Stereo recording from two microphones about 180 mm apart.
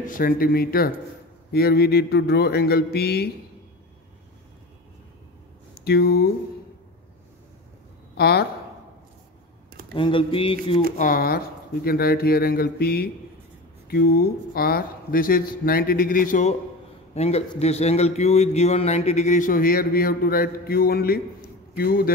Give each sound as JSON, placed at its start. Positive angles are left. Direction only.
{"t": 0.0, "sound": "speech", "side_deg": 50}
{"t": 5.8, "sound": "speech", "side_deg": 60}
{"t": 8.2, "sound": "speech", "side_deg": 60}
{"t": 9.9, "sound": "a man's voice", "side_deg": 30}
{"t": 11.0, "sound": "speech", "side_deg": 50}
{"t": 17.1, "sound": "a man's voice", "side_deg": 35}